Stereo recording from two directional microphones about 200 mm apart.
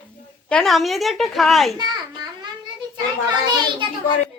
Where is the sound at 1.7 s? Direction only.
20° right (ahead or behind).